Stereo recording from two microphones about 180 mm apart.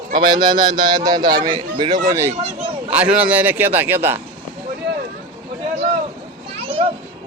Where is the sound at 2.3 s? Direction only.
35° right (ahead or behind).